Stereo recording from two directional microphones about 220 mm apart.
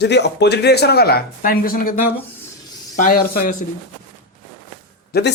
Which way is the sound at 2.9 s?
40° left (ahead or behind).